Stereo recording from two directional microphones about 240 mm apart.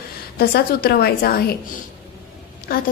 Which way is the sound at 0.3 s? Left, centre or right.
Left.